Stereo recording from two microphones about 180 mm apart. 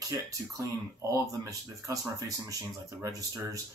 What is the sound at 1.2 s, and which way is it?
Speech, 20° right (ahead or behind).